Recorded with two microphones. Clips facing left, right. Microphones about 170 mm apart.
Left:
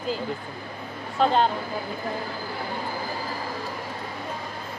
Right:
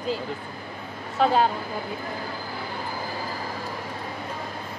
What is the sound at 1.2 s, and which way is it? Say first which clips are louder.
Speech: even; 5° right (ahead or behind).